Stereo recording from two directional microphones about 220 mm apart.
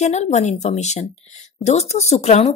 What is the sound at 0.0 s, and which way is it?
Speech, 30° left (ahead or behind).